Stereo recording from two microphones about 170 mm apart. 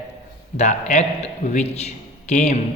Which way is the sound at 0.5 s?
40° left (ahead or behind).